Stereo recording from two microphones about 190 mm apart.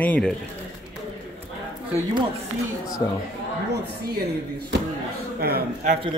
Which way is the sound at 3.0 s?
20° left (ahead or behind).